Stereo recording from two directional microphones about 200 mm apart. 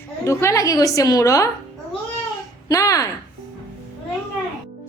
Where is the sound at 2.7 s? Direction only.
15° left (ahead or behind).